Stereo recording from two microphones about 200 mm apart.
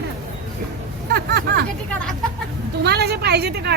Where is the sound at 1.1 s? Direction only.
55° right (ahead or behind).